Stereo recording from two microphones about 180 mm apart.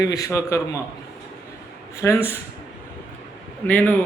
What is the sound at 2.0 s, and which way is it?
Speech, 15° left (ahead or behind).